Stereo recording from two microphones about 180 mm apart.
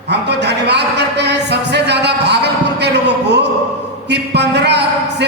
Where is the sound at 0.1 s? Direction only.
70° right (ahead or behind).